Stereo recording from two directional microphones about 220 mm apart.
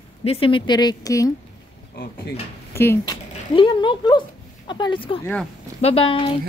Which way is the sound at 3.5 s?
20° left (ahead or behind).